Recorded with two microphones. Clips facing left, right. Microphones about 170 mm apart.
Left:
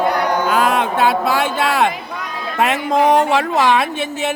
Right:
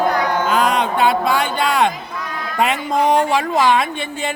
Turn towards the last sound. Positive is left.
turn(degrees=5)  # may be behind; listen again after turning